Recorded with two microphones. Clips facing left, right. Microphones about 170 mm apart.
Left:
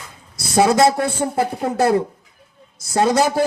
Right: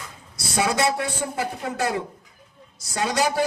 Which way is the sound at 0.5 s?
40° left (ahead or behind).